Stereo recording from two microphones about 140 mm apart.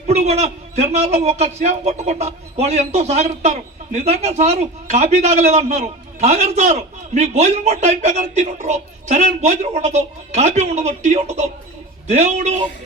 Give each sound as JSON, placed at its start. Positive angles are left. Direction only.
{"t": 0.1, "sound": "a man's voice", "side_deg": -50}